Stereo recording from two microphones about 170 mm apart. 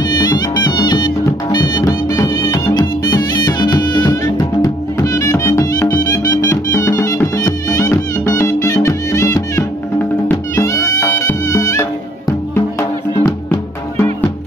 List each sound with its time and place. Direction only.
0.7 s music: 25° left (ahead or behind)